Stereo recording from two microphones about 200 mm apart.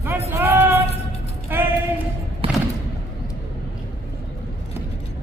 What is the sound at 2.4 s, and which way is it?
Music, 30° right (ahead or behind).